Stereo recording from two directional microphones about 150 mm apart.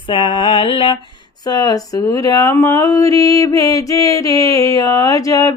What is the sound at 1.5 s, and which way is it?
Speech, 25° left (ahead or behind).